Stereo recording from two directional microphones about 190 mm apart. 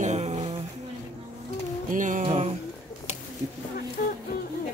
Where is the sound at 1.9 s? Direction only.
40° right (ahead or behind).